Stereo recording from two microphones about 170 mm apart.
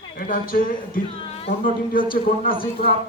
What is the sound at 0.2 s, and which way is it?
A man's voice, 55° left (ahead or behind).